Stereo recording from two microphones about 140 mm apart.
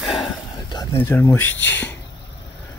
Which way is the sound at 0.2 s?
30° left (ahead or behind).